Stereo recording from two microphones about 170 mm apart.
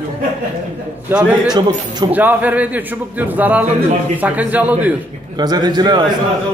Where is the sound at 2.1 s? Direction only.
10° right (ahead or behind).